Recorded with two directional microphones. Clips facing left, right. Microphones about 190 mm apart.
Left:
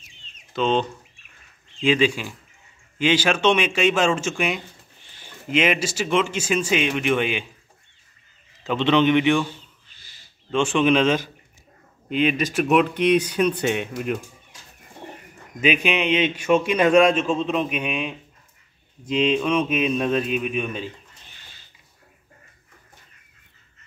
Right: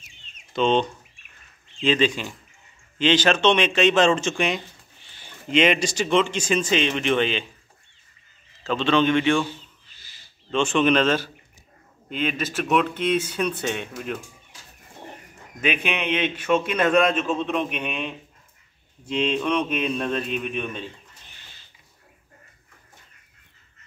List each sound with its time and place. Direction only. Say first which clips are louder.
0.5 s speech: right 1 dB; 5° left (ahead or behind)
8.6 s speech: left 2 dB; 20° left (ahead or behind)
10.5 s speech: left 1 dB; 10° left (ahead or behind)
15.6 s speech: left 4 dB; 10° left (ahead or behind)